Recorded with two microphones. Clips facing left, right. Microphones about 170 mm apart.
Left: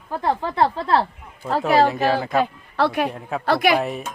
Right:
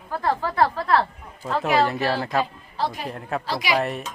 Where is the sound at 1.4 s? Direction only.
35° left (ahead or behind).